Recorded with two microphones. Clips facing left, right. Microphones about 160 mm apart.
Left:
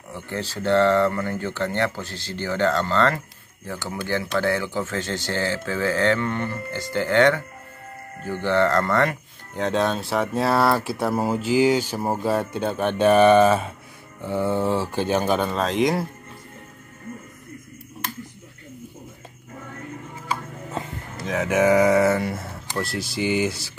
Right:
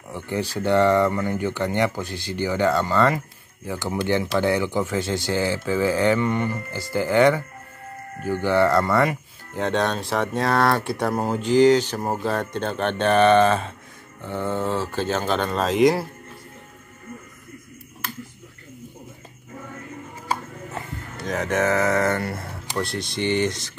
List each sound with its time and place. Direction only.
0.1 s speech: 15° right (ahead or behind)
21.3 s speech: 5° left (ahead or behind)